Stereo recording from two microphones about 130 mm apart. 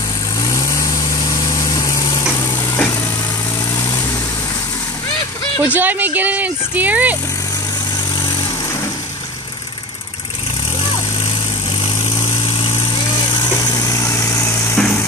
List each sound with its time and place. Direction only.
0.5 s vehicle: 25° left (ahead or behind)
1.5 s engine: 25° left (ahead or behind)
5.7 s speech: 15° right (ahead or behind)
13.8 s vehicle: 20° left (ahead or behind)
14.8 s a sound: 5° left (ahead or behind)